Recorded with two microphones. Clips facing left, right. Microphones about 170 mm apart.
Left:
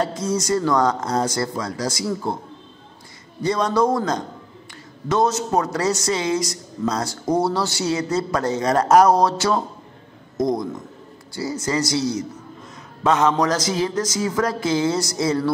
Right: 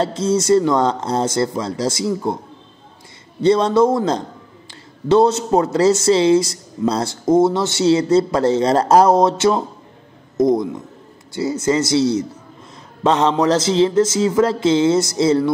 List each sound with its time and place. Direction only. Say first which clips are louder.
0.0 s speech: right 5 dB; 25° right (ahead or behind)
3.4 s speech: right 6 dB; 25° right (ahead or behind)